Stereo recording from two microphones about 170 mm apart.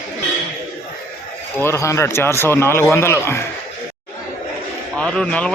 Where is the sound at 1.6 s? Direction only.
15° left (ahead or behind).